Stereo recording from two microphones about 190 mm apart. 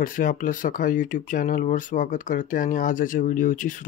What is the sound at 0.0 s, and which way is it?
Speech, 45° left (ahead or behind).